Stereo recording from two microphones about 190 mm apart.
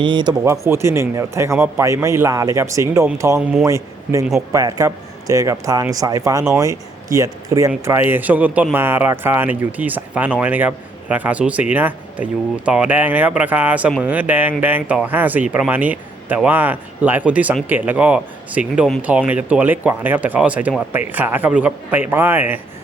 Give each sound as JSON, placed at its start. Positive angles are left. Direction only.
{"t": 0.0, "sound": "speech", "side_deg": -25}